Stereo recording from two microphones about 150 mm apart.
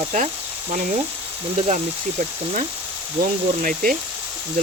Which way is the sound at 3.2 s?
65° right (ahead or behind).